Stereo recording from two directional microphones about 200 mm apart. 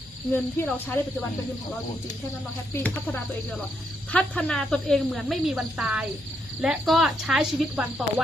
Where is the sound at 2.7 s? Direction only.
10° left (ahead or behind).